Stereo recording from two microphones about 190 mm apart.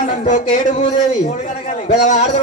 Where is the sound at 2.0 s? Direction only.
40° left (ahead or behind).